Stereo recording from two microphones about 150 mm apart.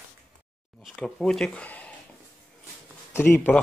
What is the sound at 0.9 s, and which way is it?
Speech, 5° left (ahead or behind).